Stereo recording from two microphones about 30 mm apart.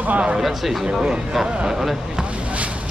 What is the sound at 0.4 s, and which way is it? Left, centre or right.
Speech, centre.